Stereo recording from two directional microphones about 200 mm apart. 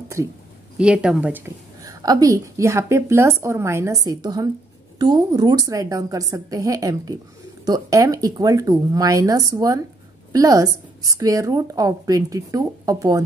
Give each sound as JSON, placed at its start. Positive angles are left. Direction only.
{"t": 0.2, "sound": "a woman's voice", "side_deg": -15}